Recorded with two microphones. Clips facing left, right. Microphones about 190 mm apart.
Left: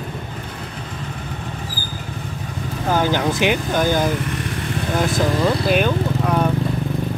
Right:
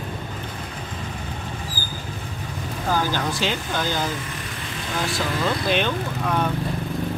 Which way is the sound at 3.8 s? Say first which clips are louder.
Left 8 dB; 55° left (ahead or behind).